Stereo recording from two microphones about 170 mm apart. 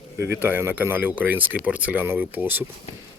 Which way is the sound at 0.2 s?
15° right (ahead or behind).